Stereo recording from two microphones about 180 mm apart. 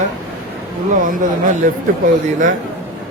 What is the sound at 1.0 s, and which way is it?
Speech, 45° right (ahead or behind).